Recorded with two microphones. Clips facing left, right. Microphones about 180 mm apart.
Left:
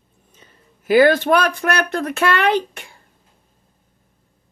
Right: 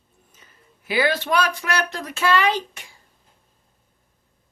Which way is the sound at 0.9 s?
50° left (ahead or behind).